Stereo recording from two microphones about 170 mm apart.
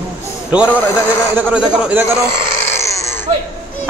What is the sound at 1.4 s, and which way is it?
Speech, 5° right (ahead or behind).